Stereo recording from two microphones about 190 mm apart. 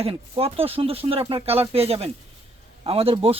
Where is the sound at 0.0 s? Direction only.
30° right (ahead or behind).